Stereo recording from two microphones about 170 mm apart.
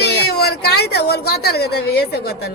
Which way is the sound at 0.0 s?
70° left (ahead or behind).